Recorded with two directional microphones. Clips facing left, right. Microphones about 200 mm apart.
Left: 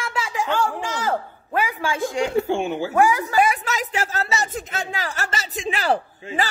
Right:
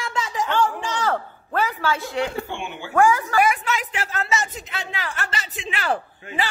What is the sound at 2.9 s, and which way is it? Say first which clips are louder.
Speech: right 3 dB; 15° left (ahead or behind).